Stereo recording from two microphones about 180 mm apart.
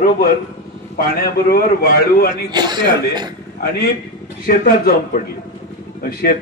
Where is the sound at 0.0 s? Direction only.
55° left (ahead or behind).